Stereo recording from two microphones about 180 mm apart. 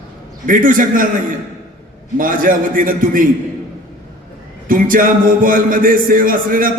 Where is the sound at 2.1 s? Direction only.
50° right (ahead or behind).